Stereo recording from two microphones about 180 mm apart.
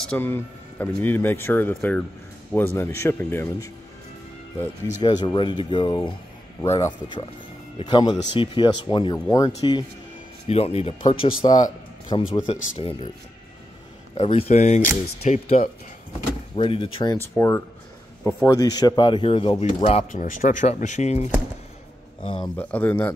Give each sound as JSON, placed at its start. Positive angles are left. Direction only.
{"t": 0.0, "sound": "speech", "side_deg": 10}
{"t": 5.0, "sound": "speech", "side_deg": 25}
{"t": 6.6, "sound": "speech", "side_deg": 15}
{"t": 14.1, "sound": "speech", "side_deg": 30}
{"t": 17.4, "sound": "speech", "side_deg": 15}
{"t": 22.4, "sound": "speech", "side_deg": 10}